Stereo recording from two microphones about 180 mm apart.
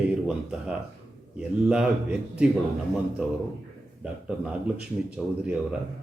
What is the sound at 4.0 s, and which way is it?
Speech, 5° right (ahead or behind).